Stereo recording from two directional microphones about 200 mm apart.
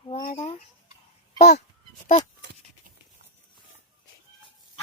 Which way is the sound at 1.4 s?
35° left (ahead or behind).